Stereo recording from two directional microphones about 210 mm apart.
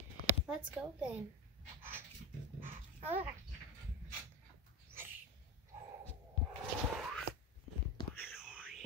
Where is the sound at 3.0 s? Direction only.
10° right (ahead or behind).